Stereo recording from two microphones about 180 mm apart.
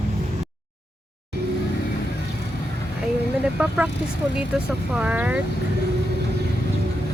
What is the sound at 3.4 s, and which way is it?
Speech, 10° right (ahead or behind).